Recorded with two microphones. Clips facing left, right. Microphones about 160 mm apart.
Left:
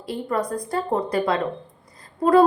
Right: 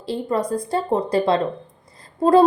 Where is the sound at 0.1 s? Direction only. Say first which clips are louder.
Right 3 dB; 25° right (ahead or behind).